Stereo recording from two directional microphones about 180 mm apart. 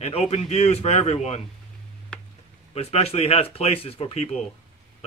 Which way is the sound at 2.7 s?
35° left (ahead or behind).